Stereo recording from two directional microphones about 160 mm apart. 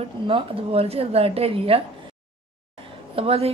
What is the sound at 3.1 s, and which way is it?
Speech, 40° right (ahead or behind).